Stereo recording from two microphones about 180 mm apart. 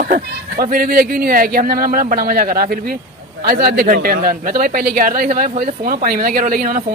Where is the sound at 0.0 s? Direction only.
55° right (ahead or behind).